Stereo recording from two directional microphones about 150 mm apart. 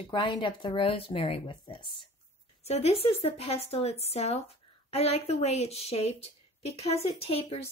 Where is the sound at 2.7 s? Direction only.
45° left (ahead or behind).